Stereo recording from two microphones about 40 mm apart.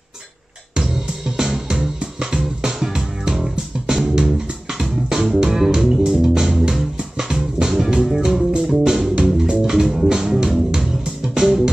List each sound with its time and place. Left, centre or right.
0.7 s music: centre
9.1 s music: centre